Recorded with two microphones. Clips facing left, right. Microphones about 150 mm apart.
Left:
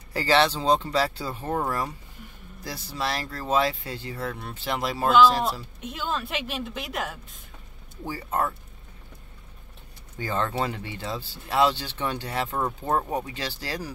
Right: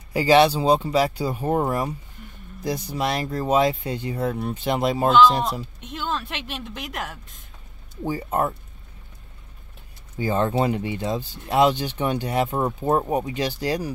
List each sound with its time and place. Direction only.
0.1 s speech: 15° right (ahead or behind)
5.8 s a woman's voice: 5° left (ahead or behind)
8.0 s speech: 20° right (ahead or behind)
10.1 s speech: 15° right (ahead or behind)